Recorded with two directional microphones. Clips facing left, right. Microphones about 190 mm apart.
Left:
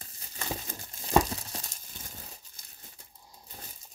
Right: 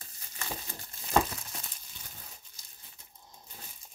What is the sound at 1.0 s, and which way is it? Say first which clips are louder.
Crumpling: left 3 dB; 35° left (ahead or behind).